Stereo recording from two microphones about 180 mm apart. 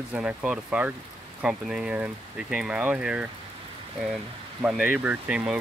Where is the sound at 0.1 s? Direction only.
5° right (ahead or behind).